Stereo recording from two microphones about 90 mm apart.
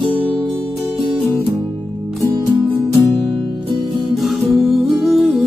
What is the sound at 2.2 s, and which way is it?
Music, 40° right (ahead or behind).